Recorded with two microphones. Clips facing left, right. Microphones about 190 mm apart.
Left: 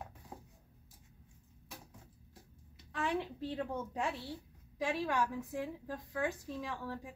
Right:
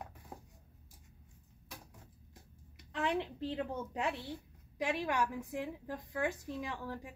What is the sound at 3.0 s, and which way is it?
A woman's voice, 20° right (ahead or behind).